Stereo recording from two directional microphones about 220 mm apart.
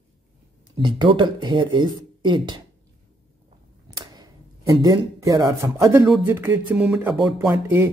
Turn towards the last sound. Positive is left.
turn(degrees=-10)  # may be behind; listen again after turning